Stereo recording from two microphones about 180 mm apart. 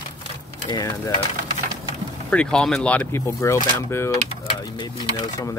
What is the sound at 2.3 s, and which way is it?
Speech, 5° left (ahead or behind).